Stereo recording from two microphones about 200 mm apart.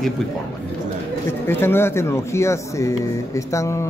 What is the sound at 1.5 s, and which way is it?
Speech, 10° left (ahead or behind).